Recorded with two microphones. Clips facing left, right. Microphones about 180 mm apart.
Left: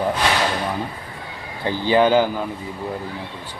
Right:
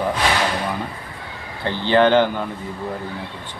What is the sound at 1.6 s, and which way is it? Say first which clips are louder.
Speech: right 1 dB; 10° left (ahead or behind).